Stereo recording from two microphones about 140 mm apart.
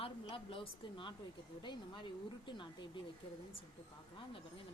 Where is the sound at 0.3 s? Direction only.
40° left (ahead or behind).